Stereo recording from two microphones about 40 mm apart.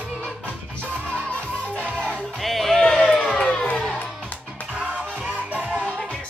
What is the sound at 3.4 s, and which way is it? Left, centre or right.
Music, left.